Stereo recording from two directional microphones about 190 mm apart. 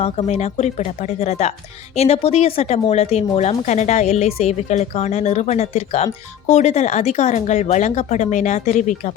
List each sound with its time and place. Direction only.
0.0 s speech: 35° left (ahead or behind)